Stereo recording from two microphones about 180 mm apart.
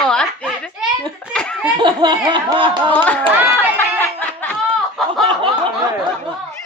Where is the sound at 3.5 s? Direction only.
10° left (ahead or behind).